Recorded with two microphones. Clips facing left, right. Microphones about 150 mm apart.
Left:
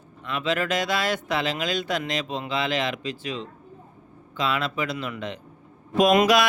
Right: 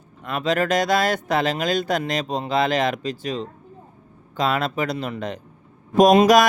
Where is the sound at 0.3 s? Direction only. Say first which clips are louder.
Right 4 dB; 40° right (ahead or behind).